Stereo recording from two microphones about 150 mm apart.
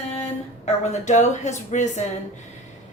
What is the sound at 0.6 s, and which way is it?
Speech, 50° left (ahead or behind).